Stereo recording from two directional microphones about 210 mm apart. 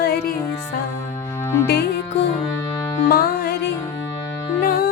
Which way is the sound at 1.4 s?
10° left (ahead or behind).